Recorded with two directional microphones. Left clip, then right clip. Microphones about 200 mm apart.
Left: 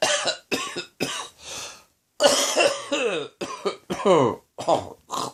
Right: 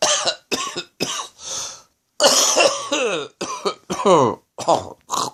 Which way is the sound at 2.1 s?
45° right (ahead or behind).